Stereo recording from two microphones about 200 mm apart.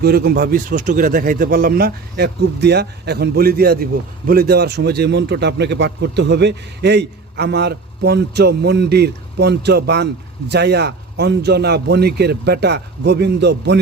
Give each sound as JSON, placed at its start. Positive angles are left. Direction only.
{"t": 0.0, "sound": "speech", "side_deg": -50}